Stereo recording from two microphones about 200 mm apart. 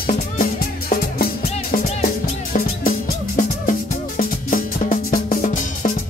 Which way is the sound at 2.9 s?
40° left (ahead or behind).